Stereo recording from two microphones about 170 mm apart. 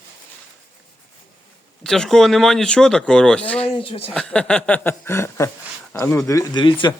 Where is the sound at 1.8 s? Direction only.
5° left (ahead or behind).